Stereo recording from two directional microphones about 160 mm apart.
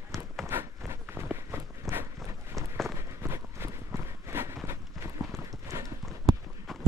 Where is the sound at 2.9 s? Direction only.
15° right (ahead or behind).